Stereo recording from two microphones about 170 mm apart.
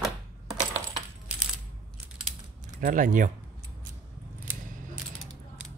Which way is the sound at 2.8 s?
50° right (ahead or behind).